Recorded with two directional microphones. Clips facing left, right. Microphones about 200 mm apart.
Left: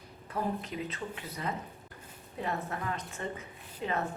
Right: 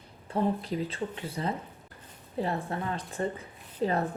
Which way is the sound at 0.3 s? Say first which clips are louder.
Right 6 dB; 30° right (ahead or behind).